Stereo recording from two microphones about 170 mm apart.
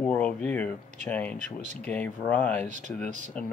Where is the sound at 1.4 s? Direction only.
45° right (ahead or behind).